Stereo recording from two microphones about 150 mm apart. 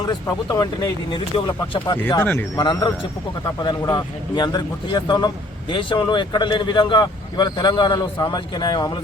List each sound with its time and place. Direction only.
0.0 s speech: 25° left (ahead or behind)
2.2 s speech: 15° left (ahead or behind)
2.6 s a man's voice: 30° left (ahead or behind)